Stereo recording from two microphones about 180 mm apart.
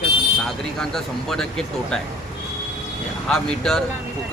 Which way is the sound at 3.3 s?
5° left (ahead or behind).